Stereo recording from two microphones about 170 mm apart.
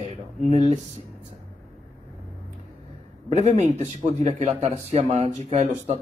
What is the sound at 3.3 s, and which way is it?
Speech, 40° right (ahead or behind).